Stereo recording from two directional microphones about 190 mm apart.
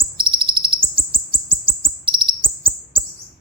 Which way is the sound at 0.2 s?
25° right (ahead or behind).